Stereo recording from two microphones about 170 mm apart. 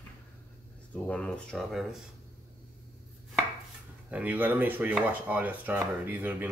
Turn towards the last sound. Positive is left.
turn(degrees=-10)  # may be behind; listen again after turning